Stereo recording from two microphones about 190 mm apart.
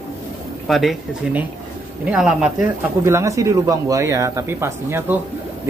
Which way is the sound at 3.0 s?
15° right (ahead or behind).